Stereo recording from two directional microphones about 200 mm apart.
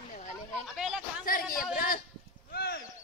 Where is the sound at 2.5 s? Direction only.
50° left (ahead or behind).